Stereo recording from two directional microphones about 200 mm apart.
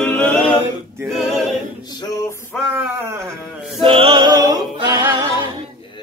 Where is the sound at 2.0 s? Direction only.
20° left (ahead or behind).